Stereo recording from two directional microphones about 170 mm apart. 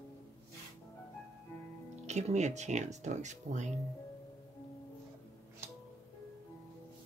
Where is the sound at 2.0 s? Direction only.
40° right (ahead or behind).